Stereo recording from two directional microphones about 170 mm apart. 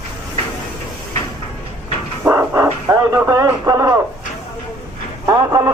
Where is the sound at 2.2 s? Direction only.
15° right (ahead or behind).